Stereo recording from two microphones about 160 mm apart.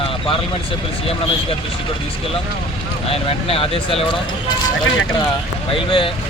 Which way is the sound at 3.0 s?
35° left (ahead or behind).